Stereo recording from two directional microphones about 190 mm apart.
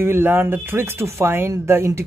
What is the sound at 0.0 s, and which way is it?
Speech, 10° right (ahead or behind).